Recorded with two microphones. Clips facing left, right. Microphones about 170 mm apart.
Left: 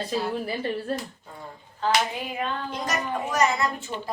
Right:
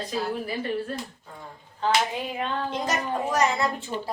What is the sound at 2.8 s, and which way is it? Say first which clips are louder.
A woman's voice: left 1 dB; 30° right (ahead or behind).